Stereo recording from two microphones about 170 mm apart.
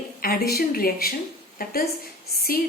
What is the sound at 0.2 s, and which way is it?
Speech, 65° left (ahead or behind).